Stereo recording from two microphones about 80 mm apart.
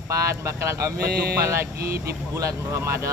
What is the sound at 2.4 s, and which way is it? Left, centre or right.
Speech, right.